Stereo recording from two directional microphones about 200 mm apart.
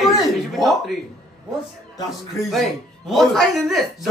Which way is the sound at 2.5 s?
Centre (ahead or behind).